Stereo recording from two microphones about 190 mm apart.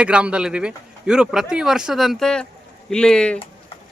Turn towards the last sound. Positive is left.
turn(degrees=5)  # may be behind; listen again after turning